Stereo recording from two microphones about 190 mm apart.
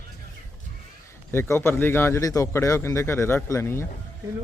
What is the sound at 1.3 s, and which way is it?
Speech, 15° left (ahead or behind).